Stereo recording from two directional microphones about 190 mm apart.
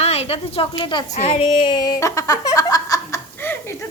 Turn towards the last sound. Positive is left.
turn(degrees=15)  # may be behind; listen again after turning